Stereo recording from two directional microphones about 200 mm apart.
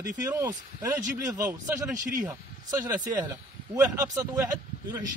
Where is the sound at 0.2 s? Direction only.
15° right (ahead or behind).